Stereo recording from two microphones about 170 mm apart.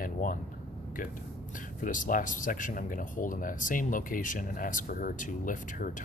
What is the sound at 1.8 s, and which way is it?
Speech, 50° left (ahead or behind).